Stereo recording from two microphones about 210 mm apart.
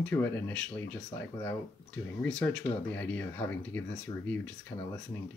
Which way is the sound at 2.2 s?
5° left (ahead or behind).